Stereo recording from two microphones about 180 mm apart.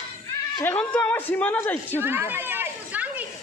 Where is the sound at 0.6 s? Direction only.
10° left (ahead or behind).